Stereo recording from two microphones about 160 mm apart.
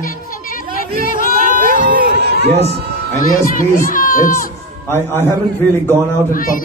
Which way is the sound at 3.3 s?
60° left (ahead or behind).